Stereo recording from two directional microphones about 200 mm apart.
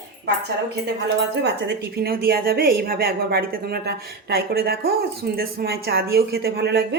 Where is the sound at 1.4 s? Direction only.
55° right (ahead or behind).